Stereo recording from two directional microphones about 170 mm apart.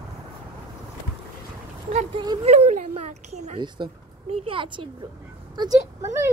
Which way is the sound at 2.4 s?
40° right (ahead or behind).